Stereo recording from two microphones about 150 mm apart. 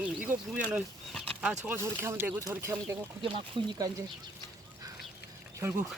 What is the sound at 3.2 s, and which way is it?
Speech, 30° right (ahead or behind).